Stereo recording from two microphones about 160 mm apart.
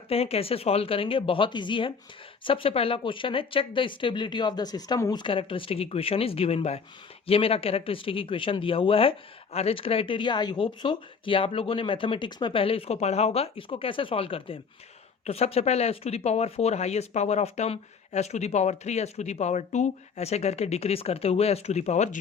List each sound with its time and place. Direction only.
0.1 s speech: 40° left (ahead or behind)